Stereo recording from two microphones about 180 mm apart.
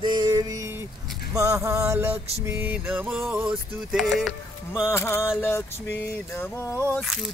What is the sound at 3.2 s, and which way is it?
Speech, 5° right (ahead or behind).